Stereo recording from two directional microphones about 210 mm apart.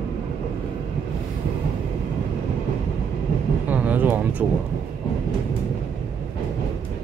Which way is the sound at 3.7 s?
5° right (ahead or behind).